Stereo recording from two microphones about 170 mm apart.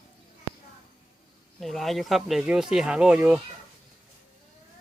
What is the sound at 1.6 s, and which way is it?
Speech, centre (ahead or behind).